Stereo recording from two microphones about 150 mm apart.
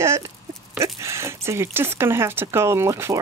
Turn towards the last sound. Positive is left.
turn(degrees=-20)  # may be behind; listen again after turning